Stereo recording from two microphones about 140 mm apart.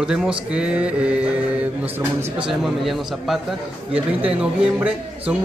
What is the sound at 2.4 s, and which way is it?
A man's voice, centre (ahead or behind).